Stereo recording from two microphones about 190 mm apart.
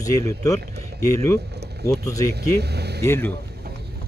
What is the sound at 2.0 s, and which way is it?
Speech, 15° left (ahead or behind).